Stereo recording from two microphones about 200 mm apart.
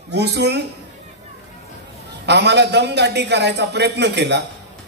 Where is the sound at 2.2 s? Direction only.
60° right (ahead or behind).